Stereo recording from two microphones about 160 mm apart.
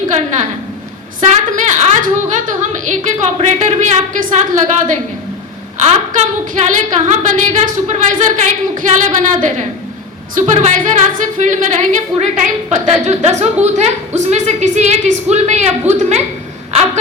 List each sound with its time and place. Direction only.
1.3 s a woman's voice: 50° right (ahead or behind)